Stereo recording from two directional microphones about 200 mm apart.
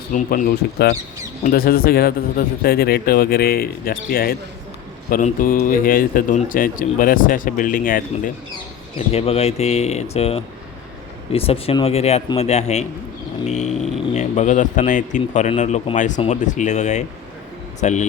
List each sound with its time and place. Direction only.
0.1 s speech: 45° left (ahead or behind)
9.0 s speech: 30° left (ahead or behind)